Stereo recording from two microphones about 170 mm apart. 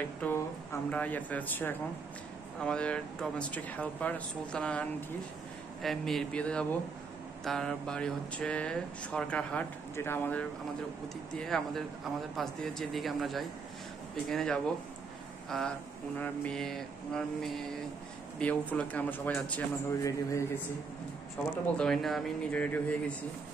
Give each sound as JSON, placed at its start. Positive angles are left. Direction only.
{"t": 0.2, "sound": "speech", "side_deg": 10}
{"t": 21.7, "sound": "speech", "side_deg": 5}